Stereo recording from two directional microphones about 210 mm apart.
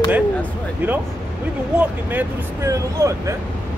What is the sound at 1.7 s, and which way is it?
Speech, 5° right (ahead or behind).